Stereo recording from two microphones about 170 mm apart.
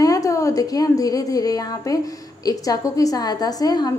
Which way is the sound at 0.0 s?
20° left (ahead or behind).